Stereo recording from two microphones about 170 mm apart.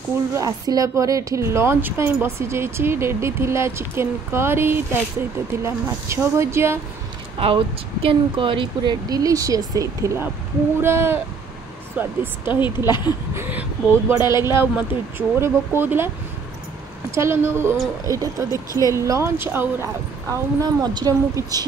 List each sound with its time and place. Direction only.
0.3 s a woman's voice: 20° right (ahead or behind)
7.3 s a woman's voice: 30° right (ahead or behind); by 12.1 s 10° right (ahead or behind)
12.4 s speech: 25° left (ahead or behind)
13.3 s a woman's voice: 10° right (ahead or behind)
17.1 s a woman's voice: 15° right (ahead or behind)